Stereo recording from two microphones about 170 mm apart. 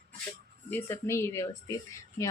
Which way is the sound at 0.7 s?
10° left (ahead or behind).